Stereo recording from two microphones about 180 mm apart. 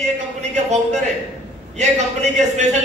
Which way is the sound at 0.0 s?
40° right (ahead or behind).